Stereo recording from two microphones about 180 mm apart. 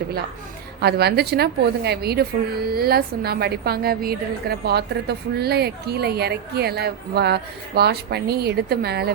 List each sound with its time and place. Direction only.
0.8 s a woman's voice: 65° right (ahead or behind)